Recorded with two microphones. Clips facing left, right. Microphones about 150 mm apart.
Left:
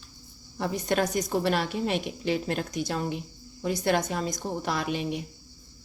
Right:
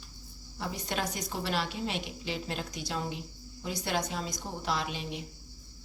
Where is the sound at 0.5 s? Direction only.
50° left (ahead or behind).